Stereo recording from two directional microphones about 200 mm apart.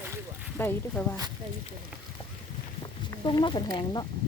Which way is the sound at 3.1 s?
20° left (ahead or behind).